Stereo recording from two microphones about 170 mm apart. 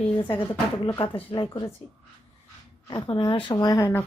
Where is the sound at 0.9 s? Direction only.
30° left (ahead or behind).